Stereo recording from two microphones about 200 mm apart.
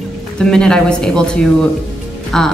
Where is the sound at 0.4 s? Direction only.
5° left (ahead or behind).